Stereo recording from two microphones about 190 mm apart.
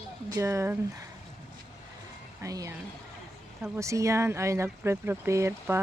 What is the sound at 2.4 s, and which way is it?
Speech, 15° right (ahead or behind).